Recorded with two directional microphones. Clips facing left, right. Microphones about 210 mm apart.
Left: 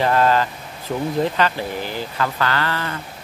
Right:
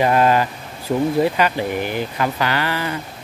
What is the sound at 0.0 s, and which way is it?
Speech, 15° right (ahead or behind).